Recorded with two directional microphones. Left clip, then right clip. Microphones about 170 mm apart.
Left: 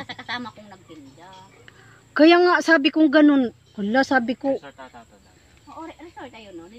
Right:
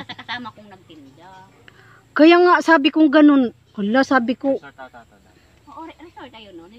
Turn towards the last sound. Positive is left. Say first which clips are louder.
# even
turn(degrees=-10)  # may be behind; listen again after turning